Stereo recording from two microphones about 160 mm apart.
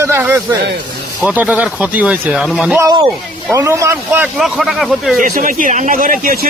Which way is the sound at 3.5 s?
15° right (ahead or behind).